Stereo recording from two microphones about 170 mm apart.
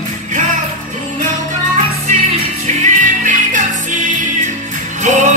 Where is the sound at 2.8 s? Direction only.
50° right (ahead or behind).